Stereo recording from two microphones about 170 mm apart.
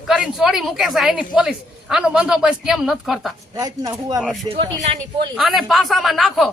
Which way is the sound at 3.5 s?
20° right (ahead or behind).